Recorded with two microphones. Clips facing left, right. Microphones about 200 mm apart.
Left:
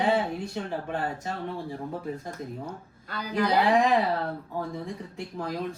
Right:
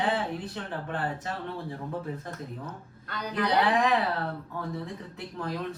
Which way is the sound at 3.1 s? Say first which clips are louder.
Left 3 dB; 5° left (ahead or behind).